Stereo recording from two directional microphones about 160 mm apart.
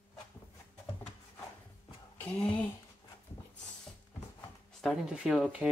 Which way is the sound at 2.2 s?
10° left (ahead or behind).